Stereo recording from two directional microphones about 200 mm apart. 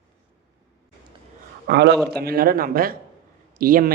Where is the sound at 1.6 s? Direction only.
55° right (ahead or behind).